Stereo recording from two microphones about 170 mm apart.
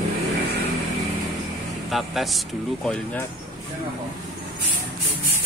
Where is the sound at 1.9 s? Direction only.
Centre (ahead or behind).